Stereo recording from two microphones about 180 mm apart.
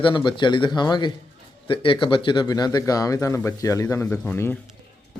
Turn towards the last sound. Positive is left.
turn(degrees=10)  # may be behind; listen again after turning